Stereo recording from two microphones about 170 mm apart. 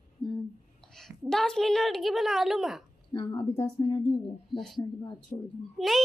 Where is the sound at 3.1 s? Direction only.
30° left (ahead or behind).